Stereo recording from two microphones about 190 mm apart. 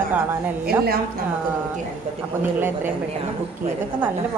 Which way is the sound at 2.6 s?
10° right (ahead or behind).